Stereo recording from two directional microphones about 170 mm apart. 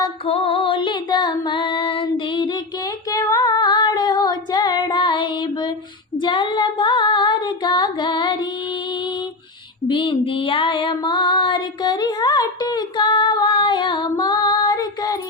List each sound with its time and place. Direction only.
0.3 s female singing: 35° left (ahead or behind)
6.1 s child singing: 25° left (ahead or behind)
9.9 s female singing: 30° left (ahead or behind)